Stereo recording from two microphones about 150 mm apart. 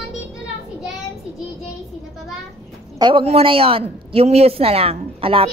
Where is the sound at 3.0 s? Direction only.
35° right (ahead or behind).